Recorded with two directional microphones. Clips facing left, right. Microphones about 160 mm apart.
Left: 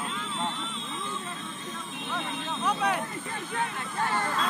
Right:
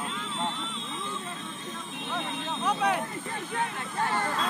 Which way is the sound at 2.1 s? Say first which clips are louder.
Even; 25° right (ahead or behind).